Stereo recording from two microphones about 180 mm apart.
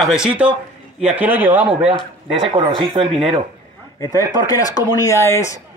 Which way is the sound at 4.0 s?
20° left (ahead or behind).